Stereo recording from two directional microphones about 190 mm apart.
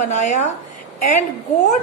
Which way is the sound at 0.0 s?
40° left (ahead or behind).